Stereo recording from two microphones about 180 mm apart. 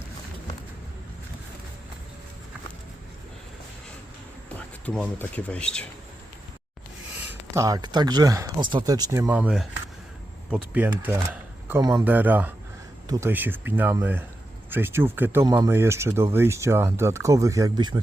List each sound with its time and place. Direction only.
4.9 s speech: 5° left (ahead or behind)
7.3 s speech: 15° right (ahead or behind)
11.0 s speech: 10° right (ahead or behind)
12.0 s speech: 10° right (ahead or behind)